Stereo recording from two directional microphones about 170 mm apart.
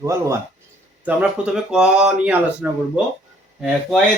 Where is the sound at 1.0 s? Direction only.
5° right (ahead or behind).